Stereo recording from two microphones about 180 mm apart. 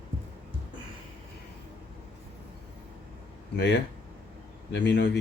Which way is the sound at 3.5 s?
80° left.